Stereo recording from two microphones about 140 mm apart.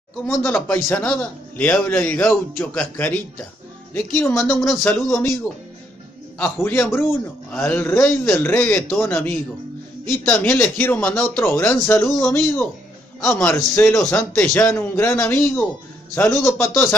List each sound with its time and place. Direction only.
0.3 s speech: 15° left (ahead or behind)
6.3 s speech: 15° left (ahead or behind)